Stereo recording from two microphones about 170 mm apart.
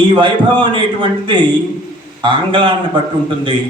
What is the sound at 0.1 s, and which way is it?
Speech, 30° right (ahead or behind).